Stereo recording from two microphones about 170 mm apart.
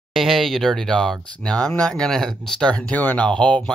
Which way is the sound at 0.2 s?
Centre (ahead or behind).